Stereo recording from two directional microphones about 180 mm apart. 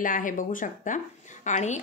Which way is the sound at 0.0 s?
50° left (ahead or behind).